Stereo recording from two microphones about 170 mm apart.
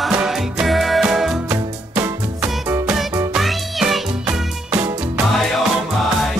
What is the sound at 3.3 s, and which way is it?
Music, centre (ahead or behind).